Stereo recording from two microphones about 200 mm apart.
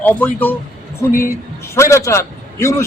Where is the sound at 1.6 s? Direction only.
15° left (ahead or behind).